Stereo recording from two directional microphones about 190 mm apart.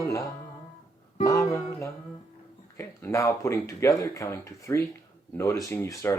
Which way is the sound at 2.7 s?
15° left (ahead or behind).